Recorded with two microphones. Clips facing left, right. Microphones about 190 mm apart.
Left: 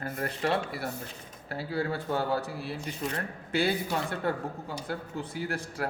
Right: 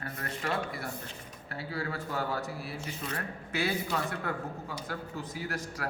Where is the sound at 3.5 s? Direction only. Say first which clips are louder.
Left 4 dB; 30° left (ahead or behind).